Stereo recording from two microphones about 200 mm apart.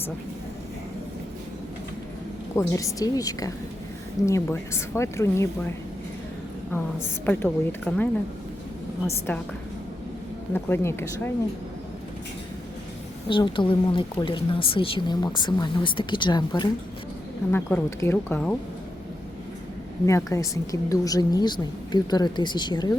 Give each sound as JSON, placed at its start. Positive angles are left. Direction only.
{"t": 2.6, "sound": "a woman's voice", "side_deg": 15}
{"t": 6.7, "sound": "a woman's voice", "side_deg": 10}
{"t": 10.5, "sound": "a woman's voice", "side_deg": 10}
{"t": 13.2, "sound": "a woman's voice", "side_deg": 25}
{"t": 17.5, "sound": "a woman's voice", "side_deg": 10}
{"t": 20.1, "sound": "a woman's voice", "side_deg": 15}